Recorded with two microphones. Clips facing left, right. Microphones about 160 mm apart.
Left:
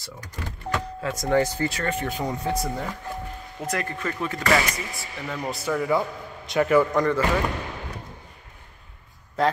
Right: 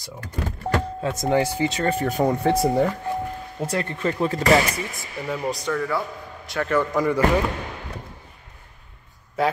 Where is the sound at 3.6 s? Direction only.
30° right (ahead or behind).